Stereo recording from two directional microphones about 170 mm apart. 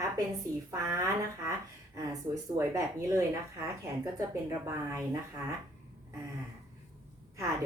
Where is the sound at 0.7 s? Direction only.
20° right (ahead or behind).